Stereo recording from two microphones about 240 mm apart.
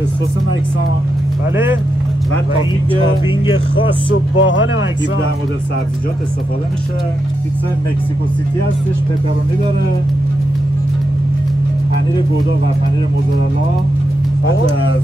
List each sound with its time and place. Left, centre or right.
3.4 s speech: left
4.4 s speech: left